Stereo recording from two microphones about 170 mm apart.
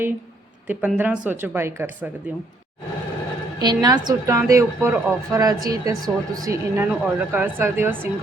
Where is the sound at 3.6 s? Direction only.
25° right (ahead or behind).